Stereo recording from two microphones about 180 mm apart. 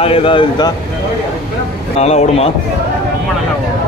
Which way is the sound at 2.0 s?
35° left (ahead or behind).